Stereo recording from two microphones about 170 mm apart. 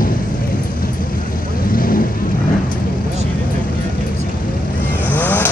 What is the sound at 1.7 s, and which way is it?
Vehicle, 60° left (ahead or behind).